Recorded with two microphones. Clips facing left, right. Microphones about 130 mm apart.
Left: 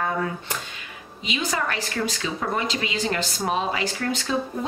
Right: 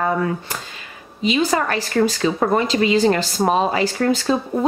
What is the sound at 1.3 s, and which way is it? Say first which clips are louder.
Speech: right 8 dB; 35° right (ahead or behind).